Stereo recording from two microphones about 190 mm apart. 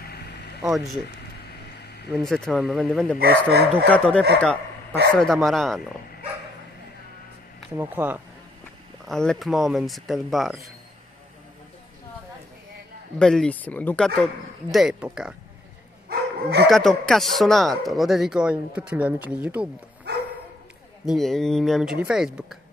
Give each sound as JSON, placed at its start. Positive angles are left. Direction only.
{"t": 0.1, "sound": "vehicle", "side_deg": 60}
{"t": 0.7, "sound": "a man's voice", "side_deg": 0}
{"t": 2.0, "sound": "a man's voice", "side_deg": 0}
{"t": 3.2, "sound": "speech", "side_deg": -55}
{"t": 3.9, "sound": "a man's voice", "side_deg": 5}
{"t": 7.7, "sound": "speech", "side_deg": -10}
{"t": 9.0, "sound": "a man's voice", "side_deg": 0}
{"t": 13.2, "sound": "a man's voice", "side_deg": 5}
{"t": 16.1, "sound": "dog", "side_deg": -60}
{"t": 16.6, "sound": "a man's voice", "side_deg": 0}
{"t": 21.0, "sound": "a man's voice", "side_deg": 0}